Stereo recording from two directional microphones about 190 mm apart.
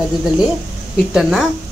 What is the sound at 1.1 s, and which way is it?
Speech, centre (ahead or behind).